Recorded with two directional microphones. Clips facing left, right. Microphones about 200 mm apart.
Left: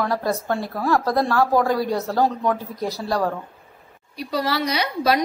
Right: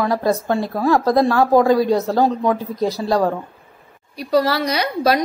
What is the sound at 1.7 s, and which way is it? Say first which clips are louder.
Speech: right 7 dB; 90° right.